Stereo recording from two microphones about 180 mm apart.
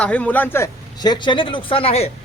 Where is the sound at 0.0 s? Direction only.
5° left (ahead or behind).